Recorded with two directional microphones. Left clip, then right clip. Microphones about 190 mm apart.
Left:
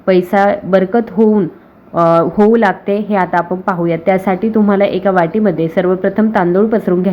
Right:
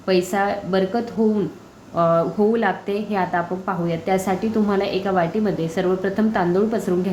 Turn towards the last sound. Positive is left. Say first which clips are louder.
# left 8 dB
turn(degrees=30)  # may be behind; listen again after turning